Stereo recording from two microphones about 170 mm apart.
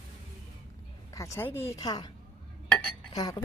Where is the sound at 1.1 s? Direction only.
20° left (ahead or behind).